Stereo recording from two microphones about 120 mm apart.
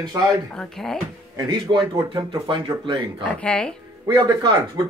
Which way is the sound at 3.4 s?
5° left (ahead or behind).